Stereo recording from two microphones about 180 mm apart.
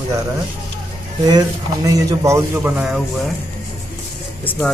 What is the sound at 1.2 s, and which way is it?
A man's voice, 20° right (ahead or behind).